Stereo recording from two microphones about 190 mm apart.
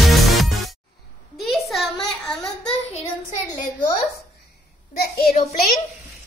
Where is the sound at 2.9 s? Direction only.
40° left (ahead or behind).